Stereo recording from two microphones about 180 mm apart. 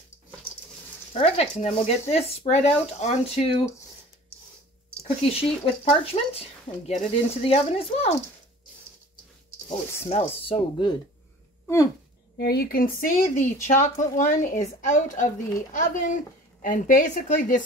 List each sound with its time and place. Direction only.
1.1 s speech: 35° left (ahead or behind)
5.3 s speech: 35° left (ahead or behind)
10.0 s speech: 35° left (ahead or behind)
12.4 s speech: 60° left (ahead or behind)